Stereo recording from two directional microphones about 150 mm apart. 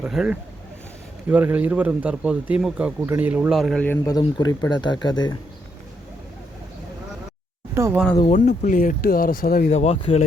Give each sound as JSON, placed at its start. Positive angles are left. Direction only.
{"t": 0.0, "sound": "speech", "side_deg": -5}
{"t": 3.8, "sound": "speech", "side_deg": 20}
{"t": 8.2, "sound": "speech", "side_deg": 55}
{"t": 9.7, "sound": "speech", "side_deg": 45}